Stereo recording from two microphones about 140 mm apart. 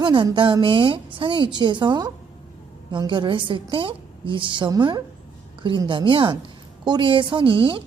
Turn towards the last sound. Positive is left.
turn(degrees=-35)  # may be behind; listen again after turning